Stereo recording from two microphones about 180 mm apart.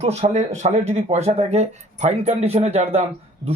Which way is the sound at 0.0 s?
35° right (ahead or behind).